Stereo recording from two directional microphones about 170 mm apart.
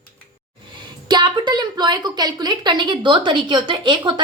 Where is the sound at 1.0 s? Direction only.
25° right (ahead or behind).